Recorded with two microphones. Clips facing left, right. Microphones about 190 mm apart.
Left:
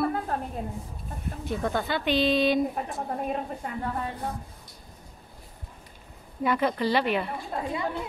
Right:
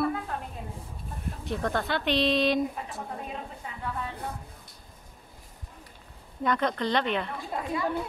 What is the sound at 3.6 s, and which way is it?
Speech, 50° left (ahead or behind).